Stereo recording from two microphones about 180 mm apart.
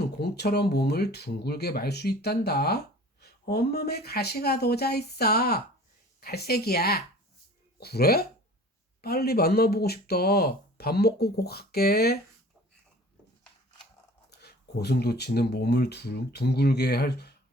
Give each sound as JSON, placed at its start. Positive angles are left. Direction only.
{"t": 0.0, "sound": "speech", "side_deg": 65}
{"t": 14.3, "sound": "speech", "side_deg": 65}